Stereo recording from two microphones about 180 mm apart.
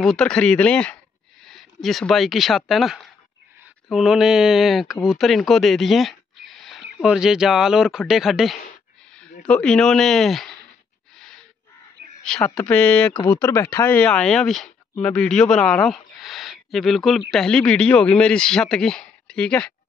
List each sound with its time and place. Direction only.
0.0 s a man's voice: 5° left (ahead or behind)
11.1 s gasp: 5° left (ahead or behind)
12.6 s a man's voice: 5° left (ahead or behind)
13.1 s a man's voice: 25° left (ahead or behind); by 19.7 s 5° left (ahead or behind)